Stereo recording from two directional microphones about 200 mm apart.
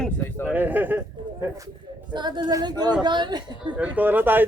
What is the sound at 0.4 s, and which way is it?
Speech, 10° right (ahead or behind).